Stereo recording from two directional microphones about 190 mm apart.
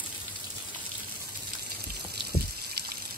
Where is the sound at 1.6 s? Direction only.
55° right (ahead or behind).